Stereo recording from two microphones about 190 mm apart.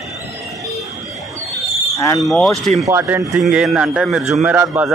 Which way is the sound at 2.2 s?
Centre (ahead or behind).